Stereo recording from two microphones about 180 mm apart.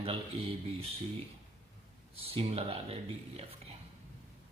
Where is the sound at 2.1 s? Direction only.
30° right (ahead or behind).